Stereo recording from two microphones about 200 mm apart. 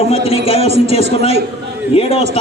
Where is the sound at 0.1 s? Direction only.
30° left (ahead or behind).